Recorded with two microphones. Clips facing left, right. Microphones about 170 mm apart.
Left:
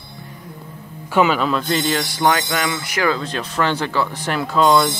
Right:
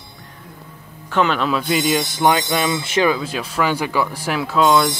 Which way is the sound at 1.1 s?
5° left (ahead or behind).